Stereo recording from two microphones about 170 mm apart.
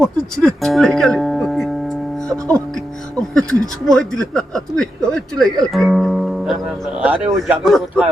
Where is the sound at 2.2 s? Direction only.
20° right (ahead or behind).